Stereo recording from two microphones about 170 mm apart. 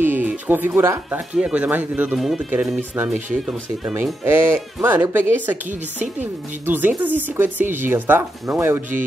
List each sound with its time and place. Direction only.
0.0 s speech: 10° right (ahead or behind)